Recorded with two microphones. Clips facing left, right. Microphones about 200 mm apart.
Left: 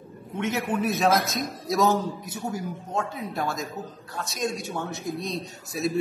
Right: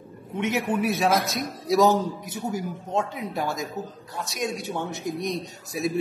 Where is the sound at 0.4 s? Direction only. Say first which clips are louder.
Right 2 dB; 15° right (ahead or behind).